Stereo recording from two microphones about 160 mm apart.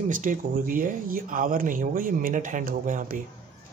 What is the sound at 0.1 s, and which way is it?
Speech, 55° right (ahead or behind).